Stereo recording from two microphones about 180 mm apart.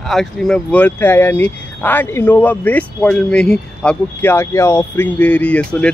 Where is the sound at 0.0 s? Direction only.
Centre (ahead or behind).